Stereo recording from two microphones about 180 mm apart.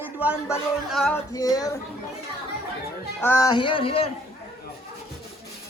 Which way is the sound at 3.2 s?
20° left (ahead or behind).